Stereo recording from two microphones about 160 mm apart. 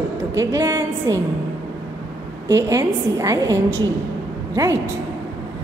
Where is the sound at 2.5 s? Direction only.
20° right (ahead or behind).